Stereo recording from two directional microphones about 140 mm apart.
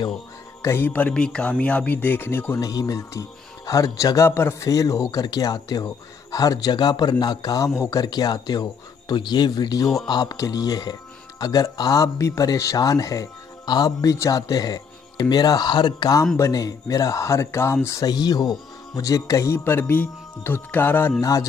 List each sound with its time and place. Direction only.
0.6 s speech: 20° left (ahead or behind)